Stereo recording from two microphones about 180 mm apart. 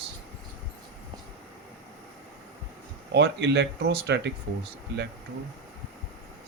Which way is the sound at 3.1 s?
70° right (ahead or behind).